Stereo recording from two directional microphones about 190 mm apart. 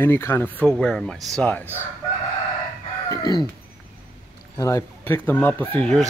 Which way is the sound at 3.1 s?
20° left (ahead or behind).